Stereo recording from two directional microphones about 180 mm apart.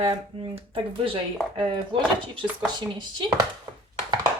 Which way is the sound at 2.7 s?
25° right (ahead or behind).